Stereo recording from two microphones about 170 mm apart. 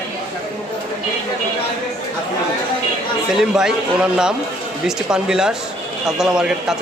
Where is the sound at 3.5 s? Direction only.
5° right (ahead or behind).